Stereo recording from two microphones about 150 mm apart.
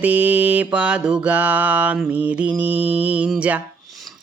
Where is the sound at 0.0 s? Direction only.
10° right (ahead or behind).